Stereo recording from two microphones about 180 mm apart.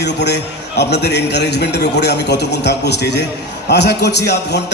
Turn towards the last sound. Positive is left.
turn(degrees=70)  # may be behind; listen again after turning